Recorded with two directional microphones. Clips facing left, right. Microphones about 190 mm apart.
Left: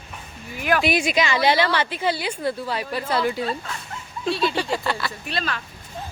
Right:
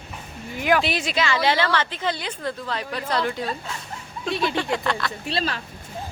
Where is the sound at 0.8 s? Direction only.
15° left (ahead or behind).